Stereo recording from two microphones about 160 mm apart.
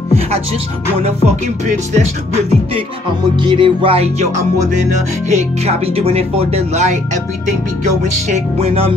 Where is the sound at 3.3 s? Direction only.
30° right (ahead or behind).